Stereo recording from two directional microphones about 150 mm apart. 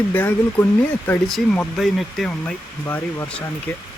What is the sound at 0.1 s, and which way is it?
Speech, 15° left (ahead or behind).